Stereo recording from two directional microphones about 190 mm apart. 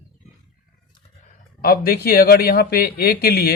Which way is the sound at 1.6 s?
50° left (ahead or behind).